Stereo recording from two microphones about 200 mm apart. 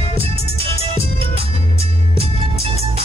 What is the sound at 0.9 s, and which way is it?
Music, 30° right (ahead or behind).